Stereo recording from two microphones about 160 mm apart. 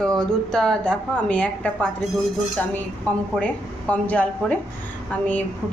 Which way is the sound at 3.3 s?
10° left (ahead or behind).